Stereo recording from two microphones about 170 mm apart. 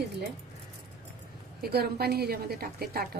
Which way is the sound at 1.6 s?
65° right (ahead or behind).